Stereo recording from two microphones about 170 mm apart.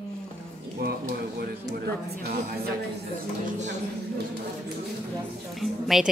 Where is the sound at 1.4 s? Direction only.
65° right (ahead or behind).